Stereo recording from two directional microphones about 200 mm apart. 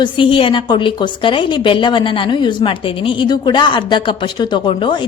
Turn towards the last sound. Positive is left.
turn(degrees=25)  # may be behind; listen again after turning